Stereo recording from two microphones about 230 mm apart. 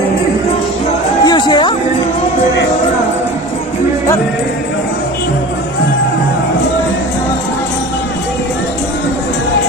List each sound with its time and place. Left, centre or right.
1.2 s music: centre